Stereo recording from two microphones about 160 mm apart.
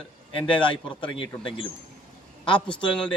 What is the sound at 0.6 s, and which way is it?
Speech, 30° left (ahead or behind).